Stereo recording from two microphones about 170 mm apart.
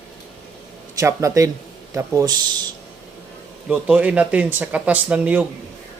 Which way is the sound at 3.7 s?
10° right (ahead or behind).